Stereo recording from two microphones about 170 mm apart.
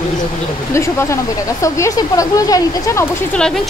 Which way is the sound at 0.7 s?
15° left (ahead or behind).